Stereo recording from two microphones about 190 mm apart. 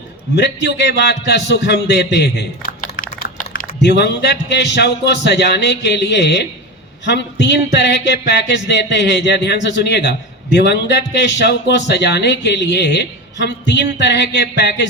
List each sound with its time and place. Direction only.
0.3 s a man's voice: 65° left (ahead or behind)